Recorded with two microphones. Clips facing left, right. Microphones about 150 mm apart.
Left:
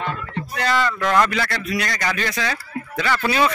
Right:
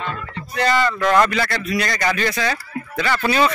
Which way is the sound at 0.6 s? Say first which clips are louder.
Right 3 dB; centre (ahead or behind).